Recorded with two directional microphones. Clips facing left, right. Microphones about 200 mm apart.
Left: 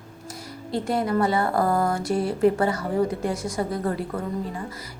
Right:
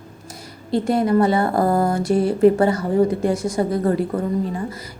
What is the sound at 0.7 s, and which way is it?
Speech, 25° right (ahead or behind).